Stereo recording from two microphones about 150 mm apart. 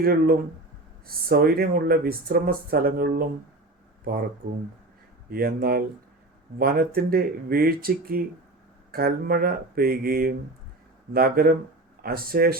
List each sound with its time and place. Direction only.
0.0 s speech: 80° right
4.4 s speech: 65° right (ahead or behind)
5.3 s speech: 80° right